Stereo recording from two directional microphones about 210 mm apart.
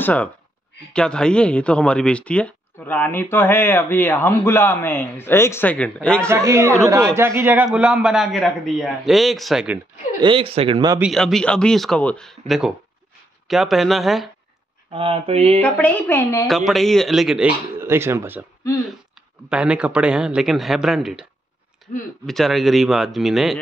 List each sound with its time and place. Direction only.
0.0 s speech: 5° left (ahead or behind)
6.2 s a man's voice: 10° right (ahead or behind)
10.2 s speech: 25° right (ahead or behind)
11.0 s a man's voice: centre (ahead or behind)
14.9 s speech: 25° right (ahead or behind)
15.6 s speech: 5° left (ahead or behind)
16.4 s a man's voice: centre (ahead or behind)
19.5 s a man's voice: 5° right (ahead or behind)
21.9 s speech: 40° left (ahead or behind)
22.2 s a man's voice: centre (ahead or behind)